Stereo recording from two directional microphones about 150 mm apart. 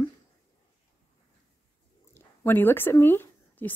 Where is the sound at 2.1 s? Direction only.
15° left (ahead or behind).